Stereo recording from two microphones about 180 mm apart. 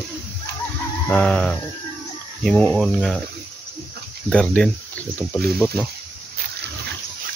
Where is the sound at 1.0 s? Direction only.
5° left (ahead or behind).